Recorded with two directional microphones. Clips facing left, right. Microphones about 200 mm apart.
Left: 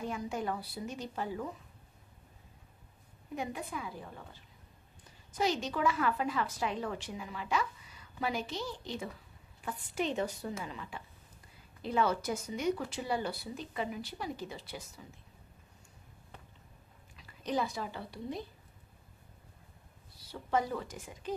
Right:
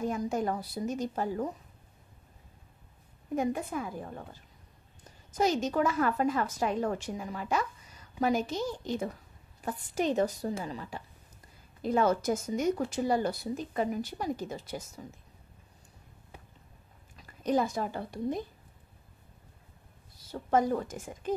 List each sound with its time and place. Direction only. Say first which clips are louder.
0.0 s speech: right 6 dB; 45° right (ahead or behind)
3.3 s speech: right 8 dB; 45° right (ahead or behind)
5.4 s speech: right 4 dB; 45° right (ahead or behind)
17.1 s a woman's voice: right 6 dB; 45° right (ahead or behind)
20.2 s speech: right 5 dB; 45° right (ahead or behind)